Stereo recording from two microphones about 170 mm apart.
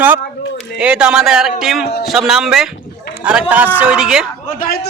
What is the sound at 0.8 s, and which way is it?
Speech, 5° right (ahead or behind).